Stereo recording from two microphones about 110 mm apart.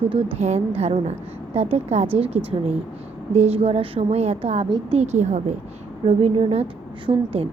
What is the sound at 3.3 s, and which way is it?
A woman's voice, 70° right (ahead or behind).